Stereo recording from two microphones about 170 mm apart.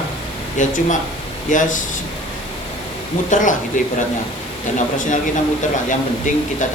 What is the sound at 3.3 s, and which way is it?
Speech, 50° left (ahead or behind).